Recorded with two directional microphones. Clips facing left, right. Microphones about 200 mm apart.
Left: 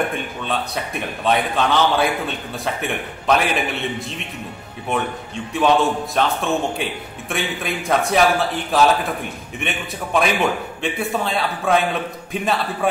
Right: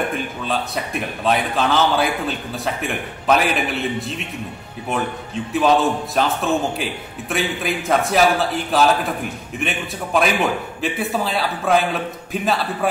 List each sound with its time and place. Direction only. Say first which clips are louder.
0.1 s a man's voice: right 1 dB; centre (ahead or behind)
5.5 s a man's voice: even; centre (ahead or behind)